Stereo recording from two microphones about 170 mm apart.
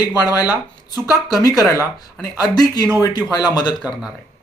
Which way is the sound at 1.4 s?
20° left (ahead or behind).